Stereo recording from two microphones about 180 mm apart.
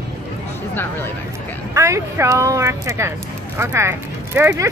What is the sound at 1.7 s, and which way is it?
Speech, 15° right (ahead or behind).